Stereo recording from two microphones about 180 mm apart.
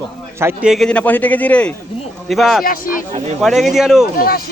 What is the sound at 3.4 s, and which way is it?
Speech, centre (ahead or behind).